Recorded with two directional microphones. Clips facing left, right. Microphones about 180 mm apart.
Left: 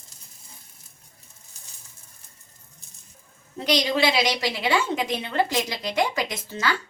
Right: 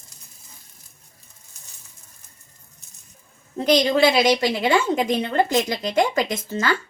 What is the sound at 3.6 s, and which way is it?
A woman's voice, 50° right (ahead or behind).